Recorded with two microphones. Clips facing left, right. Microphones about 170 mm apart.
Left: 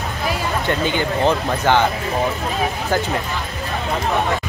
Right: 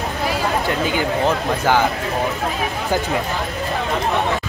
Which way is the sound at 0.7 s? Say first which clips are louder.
Even; 5° right (ahead or behind).